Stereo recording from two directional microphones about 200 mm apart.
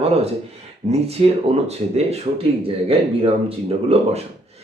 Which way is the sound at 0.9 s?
30° right (ahead or behind).